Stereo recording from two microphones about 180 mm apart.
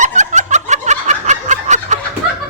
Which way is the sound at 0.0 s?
40° right (ahead or behind).